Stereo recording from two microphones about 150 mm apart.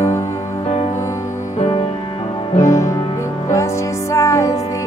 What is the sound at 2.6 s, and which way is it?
Music, 20° left (ahead or behind).